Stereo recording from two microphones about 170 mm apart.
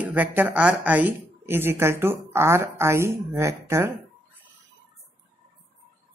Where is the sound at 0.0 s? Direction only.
10° right (ahead or behind).